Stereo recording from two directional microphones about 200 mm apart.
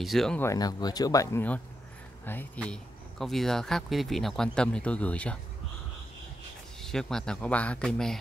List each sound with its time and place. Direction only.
0.0 s speech: centre (ahead or behind)
0.5 s speech: 20° left (ahead or behind)
6.8 s speech: centre (ahead or behind)